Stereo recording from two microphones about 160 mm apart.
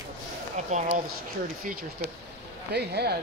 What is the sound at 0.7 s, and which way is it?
Speech, 50° right (ahead or behind).